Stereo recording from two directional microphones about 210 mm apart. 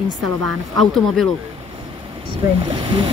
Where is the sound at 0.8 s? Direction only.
Centre (ahead or behind).